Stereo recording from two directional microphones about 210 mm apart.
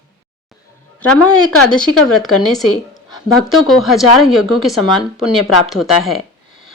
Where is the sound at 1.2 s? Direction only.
90° left.